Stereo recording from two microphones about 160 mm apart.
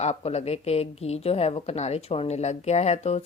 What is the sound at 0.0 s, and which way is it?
A woman's voice, 40° left (ahead or behind).